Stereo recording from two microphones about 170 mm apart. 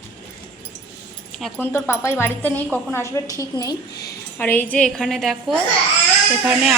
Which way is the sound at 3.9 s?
75° left (ahead or behind).